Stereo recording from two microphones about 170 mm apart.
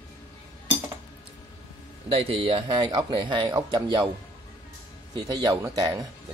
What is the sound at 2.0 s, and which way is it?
A man's voice, 35° right (ahead or behind).